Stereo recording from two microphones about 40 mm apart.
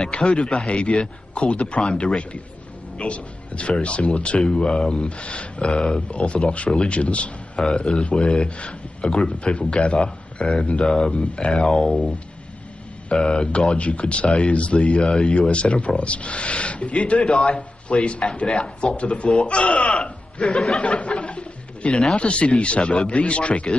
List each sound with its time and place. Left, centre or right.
0.1 s speech: left
7.5 s speech: centre; by 15.0 s left
15.0 s speech: centre
15.2 s speech: left
17.3 s speech: centre
17.6 s a man's voice: left; by 20.8 s centre
20.8 s a sound: left
22.1 s speech: left